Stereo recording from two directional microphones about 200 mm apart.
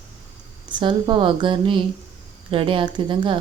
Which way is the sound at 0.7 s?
25° right (ahead or behind).